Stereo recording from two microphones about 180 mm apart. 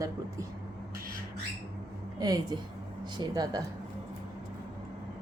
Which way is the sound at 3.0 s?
20° right (ahead or behind).